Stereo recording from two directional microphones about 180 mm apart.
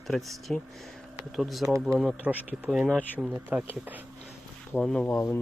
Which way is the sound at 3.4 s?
10° right (ahead or behind).